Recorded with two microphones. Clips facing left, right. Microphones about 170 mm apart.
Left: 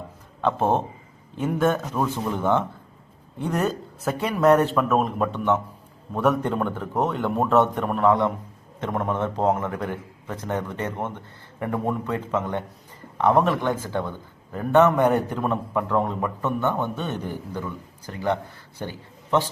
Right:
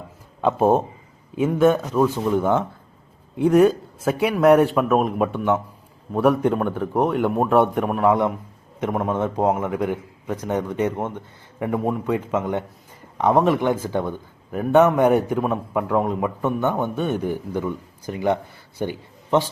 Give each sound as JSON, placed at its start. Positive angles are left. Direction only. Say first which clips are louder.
{"t": 0.4, "sound": "a man's voice", "louder": "right 4 dB", "side_deg": -10}